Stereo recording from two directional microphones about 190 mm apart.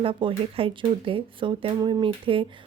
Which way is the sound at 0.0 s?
25° right (ahead or behind).